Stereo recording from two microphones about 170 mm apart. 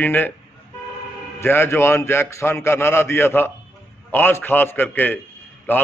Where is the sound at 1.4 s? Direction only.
15° left (ahead or behind).